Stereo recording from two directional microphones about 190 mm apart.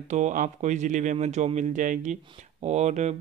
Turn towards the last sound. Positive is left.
turn(degrees=-35)  # may be behind; listen again after turning